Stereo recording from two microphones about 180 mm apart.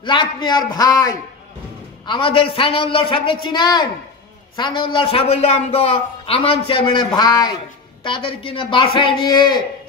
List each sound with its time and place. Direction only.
0.0 s a man's voice: 25° left (ahead or behind)